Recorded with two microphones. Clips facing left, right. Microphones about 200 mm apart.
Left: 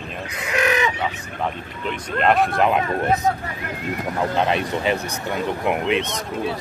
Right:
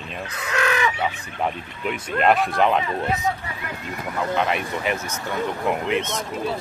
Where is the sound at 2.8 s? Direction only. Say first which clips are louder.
Left 4 dB; 45° left (ahead or behind).